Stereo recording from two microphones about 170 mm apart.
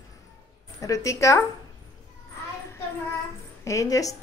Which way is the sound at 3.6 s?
20° left (ahead or behind).